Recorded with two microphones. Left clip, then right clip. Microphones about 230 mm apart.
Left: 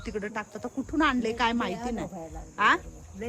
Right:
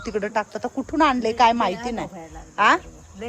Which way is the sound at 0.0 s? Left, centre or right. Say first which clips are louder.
Right 10 dB; centre.